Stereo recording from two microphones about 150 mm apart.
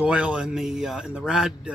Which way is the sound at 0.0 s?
5° right (ahead or behind).